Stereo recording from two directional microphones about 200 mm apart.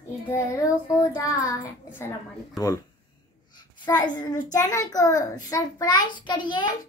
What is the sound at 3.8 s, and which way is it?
A child's voice, 20° left (ahead or behind).